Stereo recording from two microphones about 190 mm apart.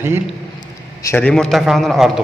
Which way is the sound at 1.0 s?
10° left (ahead or behind).